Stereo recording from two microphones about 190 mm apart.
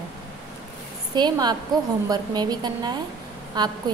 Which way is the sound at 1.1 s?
20° right (ahead or behind).